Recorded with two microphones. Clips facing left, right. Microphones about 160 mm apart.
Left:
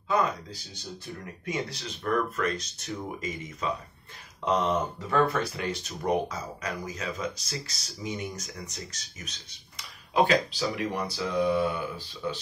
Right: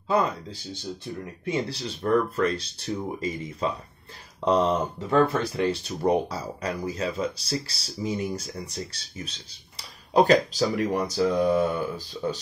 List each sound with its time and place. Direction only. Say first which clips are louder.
0.1 s speech: right 3 dB; 30° right (ahead or behind)